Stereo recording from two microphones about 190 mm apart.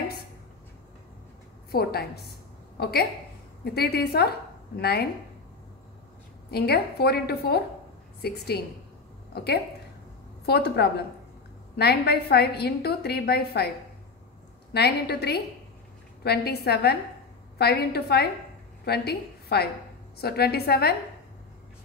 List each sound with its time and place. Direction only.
1.7 s a woman's voice: 55° left (ahead or behind)
6.5 s a woman's voice: 55° left (ahead or behind)
14.7 s a woman's voice: 60° left (ahead or behind)